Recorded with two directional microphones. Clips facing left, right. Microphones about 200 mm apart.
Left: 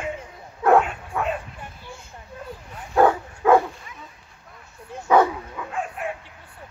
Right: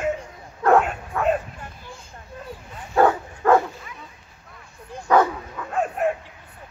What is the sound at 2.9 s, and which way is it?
Dog, 5° left (ahead or behind).